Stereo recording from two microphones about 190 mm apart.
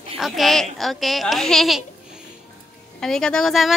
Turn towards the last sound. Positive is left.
turn(degrees=0)  # may be behind; listen again after turning